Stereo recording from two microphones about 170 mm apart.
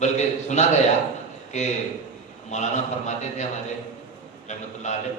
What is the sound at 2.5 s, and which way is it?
Speech, 45° left (ahead or behind).